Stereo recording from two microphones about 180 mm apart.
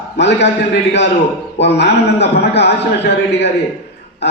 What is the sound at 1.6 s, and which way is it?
A man's voice, 70° left (ahead or behind).